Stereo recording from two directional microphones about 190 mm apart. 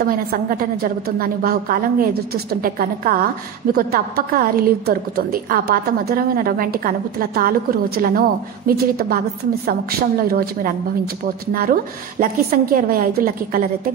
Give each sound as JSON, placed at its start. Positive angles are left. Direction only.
{"t": 0.0, "sound": "a woman's voice", "side_deg": -50}